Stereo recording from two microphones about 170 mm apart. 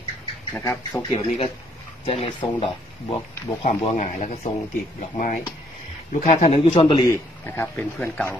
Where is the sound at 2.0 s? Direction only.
35° left (ahead or behind).